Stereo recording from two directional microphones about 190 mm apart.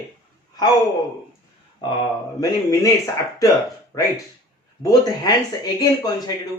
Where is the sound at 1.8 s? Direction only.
25° left (ahead or behind).